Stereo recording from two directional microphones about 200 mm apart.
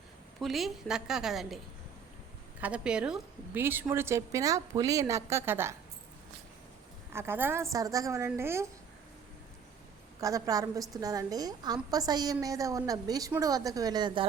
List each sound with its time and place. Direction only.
0.3 s a woman's voice: centre (ahead or behind)
2.6 s a woman's voice: 5° right (ahead or behind)
7.1 s a woman's voice: 10° right (ahead or behind)
10.2 s a woman's voice: 15° right (ahead or behind)